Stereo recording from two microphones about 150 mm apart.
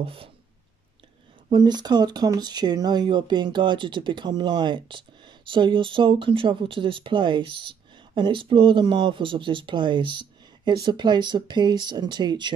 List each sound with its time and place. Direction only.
0.0 s speech: 35° right (ahead or behind)
1.5 s speech: 30° right (ahead or behind)